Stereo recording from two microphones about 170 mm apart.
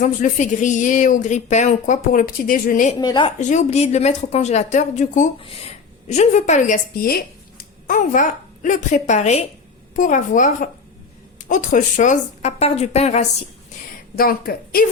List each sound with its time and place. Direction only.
0.0 s a woman's voice: 45° left (ahead or behind)
3.0 s a woman's voice: 25° left (ahead or behind)
3.3 s a woman's voice: 45° left (ahead or behind)
14.2 s speech: 60° left (ahead or behind)